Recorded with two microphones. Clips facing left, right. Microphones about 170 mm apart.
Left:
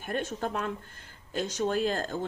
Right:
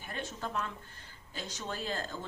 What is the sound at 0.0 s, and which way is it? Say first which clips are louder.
Speech: left 8 dB; 50° left (ahead or behind).